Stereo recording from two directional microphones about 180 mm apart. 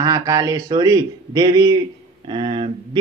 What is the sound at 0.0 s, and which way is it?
Speech, 20° right (ahead or behind).